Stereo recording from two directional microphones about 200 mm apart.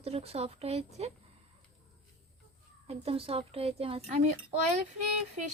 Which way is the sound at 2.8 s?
30° right (ahead or behind).